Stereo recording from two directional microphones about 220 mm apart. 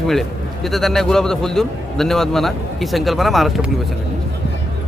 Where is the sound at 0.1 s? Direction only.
Centre (ahead or behind).